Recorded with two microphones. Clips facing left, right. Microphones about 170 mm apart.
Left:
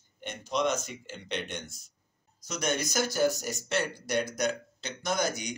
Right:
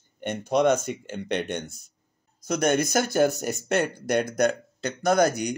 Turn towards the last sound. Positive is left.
turn(degrees=-60)  # may be behind; listen again after turning